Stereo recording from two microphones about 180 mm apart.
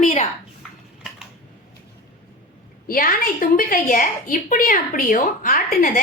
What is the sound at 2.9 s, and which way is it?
A woman's voice, 50° left (ahead or behind).